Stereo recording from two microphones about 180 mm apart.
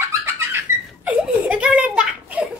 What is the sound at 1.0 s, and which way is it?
Giggle, 5° right (ahead or behind).